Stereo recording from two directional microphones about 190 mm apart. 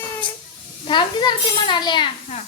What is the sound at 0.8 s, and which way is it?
A child's voice, 25° left (ahead or behind).